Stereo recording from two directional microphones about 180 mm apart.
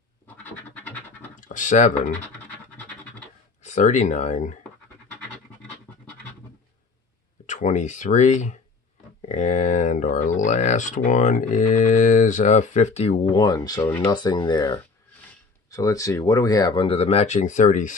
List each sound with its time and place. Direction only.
0.4 s scratch: 10° left (ahead or behind)
1.3 s computer keyboard: 45° left (ahead or behind)
3.6 s speech: 40° left (ahead or behind)
7.4 s speech: 40° left (ahead or behind)